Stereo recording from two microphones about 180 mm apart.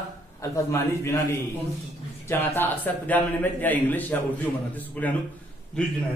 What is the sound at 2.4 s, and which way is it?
A woman's voice, 10° left (ahead or behind).